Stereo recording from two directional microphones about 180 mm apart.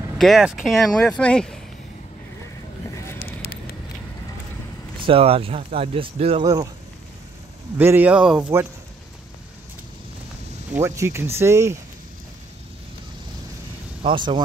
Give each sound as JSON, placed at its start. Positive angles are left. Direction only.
{"t": 0.2, "sound": "speech", "side_deg": 0}
{"t": 4.9, "sound": "speech", "side_deg": -30}
{"t": 6.4, "sound": "speech", "side_deg": -20}
{"t": 7.7, "sound": "speech", "side_deg": -10}
{"t": 10.7, "sound": "speech", "side_deg": -15}
{"t": 14.0, "sound": "speech", "side_deg": -25}